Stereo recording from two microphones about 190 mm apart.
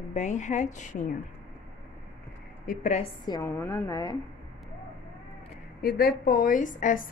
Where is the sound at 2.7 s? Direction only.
40° left (ahead or behind).